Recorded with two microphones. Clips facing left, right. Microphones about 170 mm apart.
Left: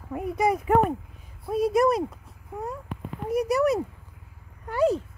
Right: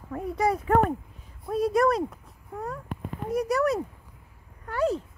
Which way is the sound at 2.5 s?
15° left (ahead or behind).